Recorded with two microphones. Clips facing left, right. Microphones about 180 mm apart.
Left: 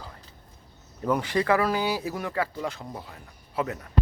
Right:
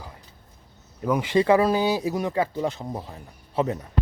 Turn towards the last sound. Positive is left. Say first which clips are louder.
# right 5 dB
turn(degrees=-25)  # may be behind; listen again after turning